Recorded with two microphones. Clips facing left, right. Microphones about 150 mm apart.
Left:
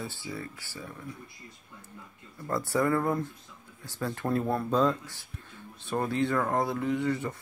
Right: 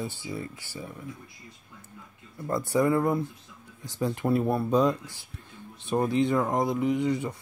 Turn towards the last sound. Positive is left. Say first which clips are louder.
# right 3 dB
turn(degrees=-15)  # may be behind; listen again after turning